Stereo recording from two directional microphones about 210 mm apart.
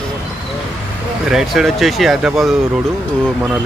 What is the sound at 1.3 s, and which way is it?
Speech, centre (ahead or behind).